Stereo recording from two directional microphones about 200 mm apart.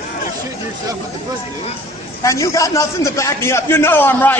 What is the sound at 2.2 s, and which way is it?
A man's voice, 15° left (ahead or behind).